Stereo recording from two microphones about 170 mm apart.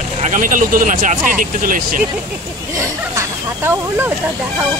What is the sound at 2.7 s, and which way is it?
Speech, 15° right (ahead or behind).